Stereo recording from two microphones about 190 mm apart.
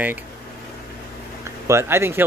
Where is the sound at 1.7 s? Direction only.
15° right (ahead or behind).